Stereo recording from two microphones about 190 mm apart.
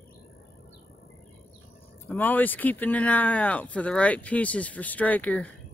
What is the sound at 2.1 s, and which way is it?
Speech, 10° left (ahead or behind).